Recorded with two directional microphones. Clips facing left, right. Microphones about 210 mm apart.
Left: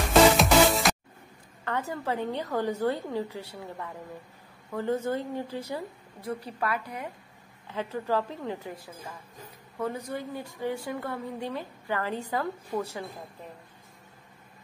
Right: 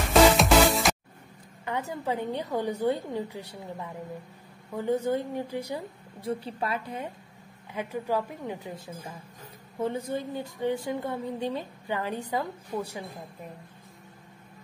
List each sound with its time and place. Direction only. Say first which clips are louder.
0.0 s music: even; centre (ahead or behind)
1.6 s a woman's voice: even; 15° right (ahead or behind)
6.2 s speech: right 1 dB; 25° right (ahead or behind)
7.6 s a woman's voice: even; 15° right (ahead or behind)